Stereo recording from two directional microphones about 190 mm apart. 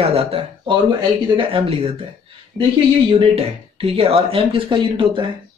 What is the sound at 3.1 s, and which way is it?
Speech, 30° right (ahead or behind).